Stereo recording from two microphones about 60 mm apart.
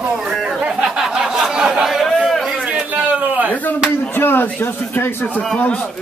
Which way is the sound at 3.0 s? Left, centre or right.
Right.